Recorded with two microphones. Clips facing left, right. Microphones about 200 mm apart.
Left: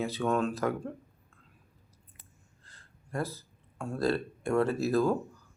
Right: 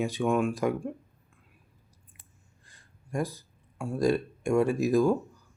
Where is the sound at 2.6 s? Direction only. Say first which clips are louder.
Even; 15° right (ahead or behind).